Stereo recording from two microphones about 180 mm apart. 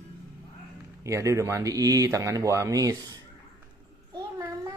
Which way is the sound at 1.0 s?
15° right (ahead or behind).